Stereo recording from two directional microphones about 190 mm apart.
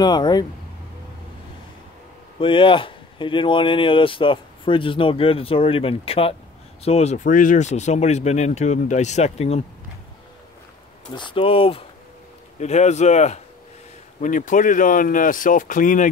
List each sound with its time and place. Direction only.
0.0 s speech: 20° left (ahead or behind)
2.3 s speech: 25° left (ahead or behind)
11.1 s speech: 25° left (ahead or behind); by 16.1 s 45° left (ahead or behind)